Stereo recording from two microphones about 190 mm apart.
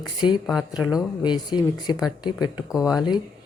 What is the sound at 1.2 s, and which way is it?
Speech, 20° left (ahead or behind).